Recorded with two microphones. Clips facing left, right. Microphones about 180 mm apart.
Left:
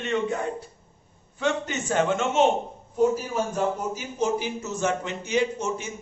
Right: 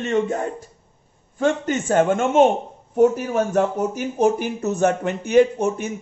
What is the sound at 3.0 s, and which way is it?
A man's voice, 65° right (ahead or behind).